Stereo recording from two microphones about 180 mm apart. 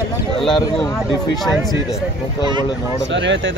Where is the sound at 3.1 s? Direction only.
85° right.